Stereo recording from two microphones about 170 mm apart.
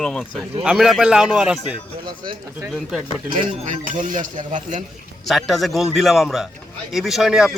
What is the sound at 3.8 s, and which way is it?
Speech, 50° right (ahead or behind).